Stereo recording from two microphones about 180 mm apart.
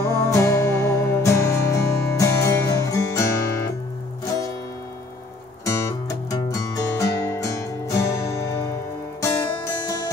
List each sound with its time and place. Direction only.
0.0 s music: 15° left (ahead or behind)
5.7 s music: 15° left (ahead or behind)